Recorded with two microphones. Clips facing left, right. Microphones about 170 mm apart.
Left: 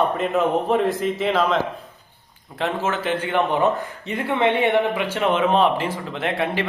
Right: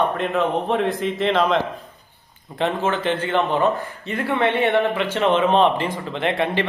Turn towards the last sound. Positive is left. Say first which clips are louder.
# right 2 dB
turn(degrees=5)  # may be behind; listen again after turning